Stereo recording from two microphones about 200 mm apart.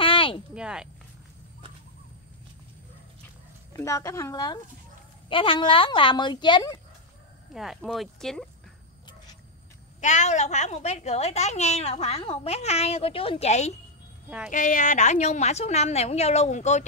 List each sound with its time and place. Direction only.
0.0 s a sound: 25° left (ahead or behind)
0.6 s speech: 5° right (ahead or behind)
3.7 s a woman's voice: 15° left (ahead or behind)
7.5 s speech: centre (ahead or behind)
9.9 s a woman's voice: 35° left (ahead or behind)